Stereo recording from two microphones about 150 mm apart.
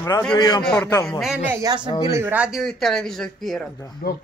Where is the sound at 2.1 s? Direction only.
10° right (ahead or behind).